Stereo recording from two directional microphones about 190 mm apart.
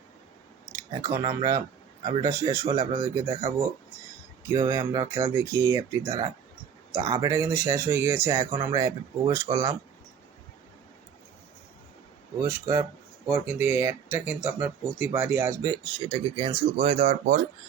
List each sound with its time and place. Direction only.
0.7 s speech: 15° right (ahead or behind)
12.4 s speech: 15° right (ahead or behind)
15.7 s speech: 25° right (ahead or behind); by 17.4 s 45° right (ahead or behind)